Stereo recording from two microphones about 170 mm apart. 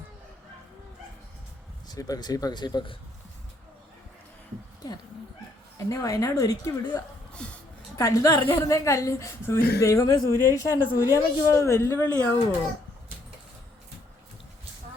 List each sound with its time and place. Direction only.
1.9 s speech: 20° left (ahead or behind)
5.9 s speech: 20° left (ahead or behind)
7.4 s a woman's voice: 5° left (ahead or behind)
7.9 s a man's voice: 20° left (ahead or behind)
9.6 s speech: 65° left (ahead or behind)
9.8 s a man's voice: 20° left (ahead or behind)